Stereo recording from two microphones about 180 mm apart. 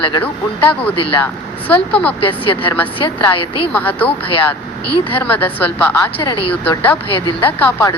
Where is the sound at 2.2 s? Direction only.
30° left (ahead or behind).